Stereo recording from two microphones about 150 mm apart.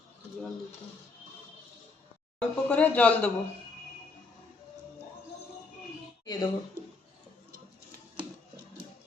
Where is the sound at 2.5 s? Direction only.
10° left (ahead or behind).